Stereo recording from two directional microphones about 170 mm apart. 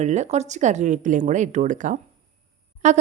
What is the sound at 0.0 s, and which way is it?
A woman's voice, 45° right (ahead or behind).